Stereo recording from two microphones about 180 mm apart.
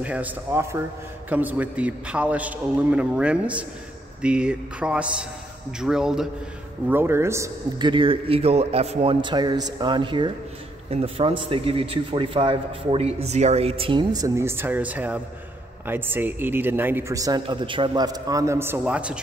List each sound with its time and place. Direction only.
0.0 s a man's voice: 10° right (ahead or behind)
7.9 s a man's voice: 30° right (ahead or behind); by 19.1 s 5° right (ahead or behind)